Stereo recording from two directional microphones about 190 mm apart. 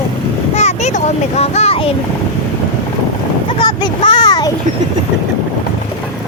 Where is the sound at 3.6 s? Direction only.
25° left (ahead or behind).